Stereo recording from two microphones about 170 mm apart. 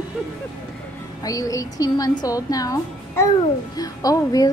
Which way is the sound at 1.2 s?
20° left (ahead or behind).